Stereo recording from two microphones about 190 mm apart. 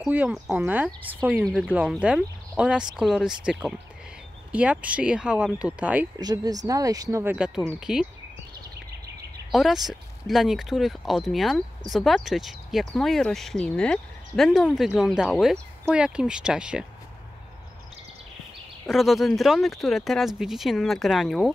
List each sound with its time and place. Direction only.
0.0 s speech: 5° right (ahead or behind)
1.4 s speech: centre (ahead or behind)
6.1 s speech: 20° right (ahead or behind); by 8.1 s 5° right (ahead or behind)
9.5 s speech: centre (ahead or behind)
18.9 s speech: centre (ahead or behind)